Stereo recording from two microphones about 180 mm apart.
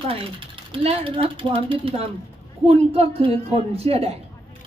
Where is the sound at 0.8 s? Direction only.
30° right (ahead or behind).